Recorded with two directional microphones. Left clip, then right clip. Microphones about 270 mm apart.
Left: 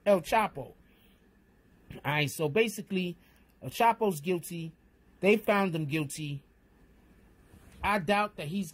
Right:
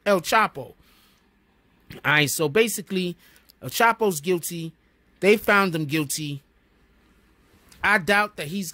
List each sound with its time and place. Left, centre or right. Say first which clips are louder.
0.0 s speech: right 6 dB; right
1.9 s speech: right 11 dB; right
7.8 s speech: right 8 dB; right